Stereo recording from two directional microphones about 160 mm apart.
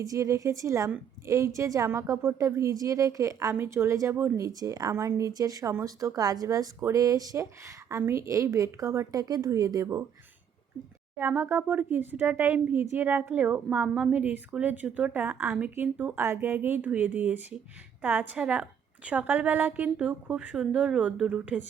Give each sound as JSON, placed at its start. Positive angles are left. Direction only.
{"t": 0.0, "sound": "a woman's voice", "side_deg": -20}
{"t": 11.2, "sound": "a woman's voice", "side_deg": -10}